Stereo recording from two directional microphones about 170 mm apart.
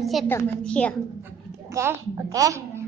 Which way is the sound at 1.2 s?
15° right (ahead or behind).